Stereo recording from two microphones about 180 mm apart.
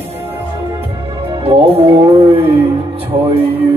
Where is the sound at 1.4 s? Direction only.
35° right (ahead or behind).